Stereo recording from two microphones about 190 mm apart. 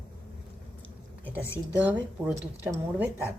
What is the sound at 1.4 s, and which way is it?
Speech, 15° left (ahead or behind).